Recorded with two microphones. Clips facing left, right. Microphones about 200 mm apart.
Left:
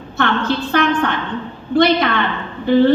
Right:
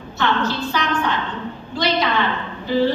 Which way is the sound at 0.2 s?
55° left (ahead or behind).